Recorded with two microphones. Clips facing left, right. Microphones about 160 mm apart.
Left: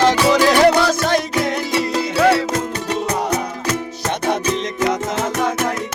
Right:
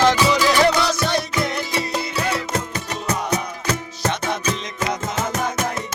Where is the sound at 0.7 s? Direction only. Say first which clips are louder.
Left 4 dB; 45° left (ahead or behind); by 2.5 s 85° left.